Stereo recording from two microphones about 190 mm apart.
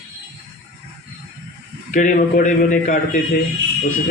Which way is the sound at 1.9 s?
45° left (ahead or behind).